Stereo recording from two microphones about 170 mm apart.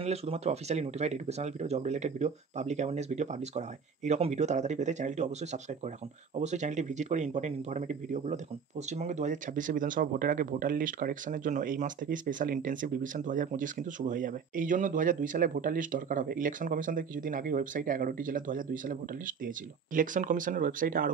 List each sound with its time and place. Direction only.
0.0 s speech: 40° right (ahead or behind); by 21.1 s 55° right (ahead or behind)